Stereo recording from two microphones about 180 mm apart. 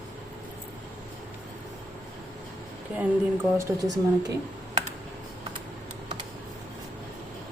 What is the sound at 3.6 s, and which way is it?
Speech, 20° right (ahead or behind).